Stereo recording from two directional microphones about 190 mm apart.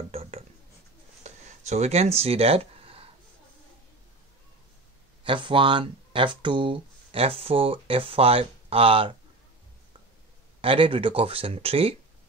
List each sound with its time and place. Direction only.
0.1 s writing: 30° right (ahead or behind)
1.2 s a sound: 35° right (ahead or behind)
5.2 s speech: 25° right (ahead or behind)
10.6 s speech: 30° right (ahead or behind)